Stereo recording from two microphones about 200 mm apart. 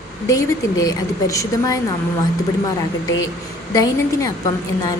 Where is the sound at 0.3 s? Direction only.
15° left (ahead or behind).